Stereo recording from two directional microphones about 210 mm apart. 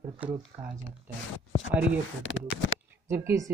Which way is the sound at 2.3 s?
65° left (ahead or behind).